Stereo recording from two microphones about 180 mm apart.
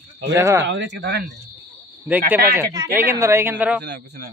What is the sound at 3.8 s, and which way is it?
Speech, 65° right (ahead or behind).